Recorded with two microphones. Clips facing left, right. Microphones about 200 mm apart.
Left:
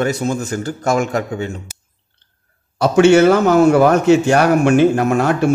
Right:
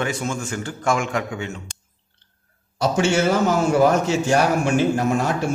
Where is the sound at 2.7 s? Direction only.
65° left (ahead or behind).